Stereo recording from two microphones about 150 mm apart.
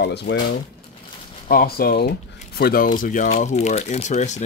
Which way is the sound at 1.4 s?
85° left.